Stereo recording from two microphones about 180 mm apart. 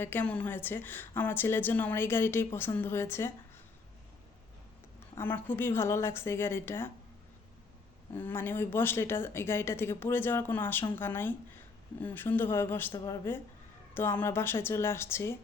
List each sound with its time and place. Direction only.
0.0 s a woman's voice: 10° left (ahead or behind)
5.1 s a woman's voice: 10° left (ahead or behind)
8.1 s a woman's voice: 10° left (ahead or behind)